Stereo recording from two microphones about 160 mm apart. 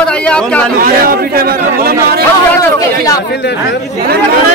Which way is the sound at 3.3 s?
90° left.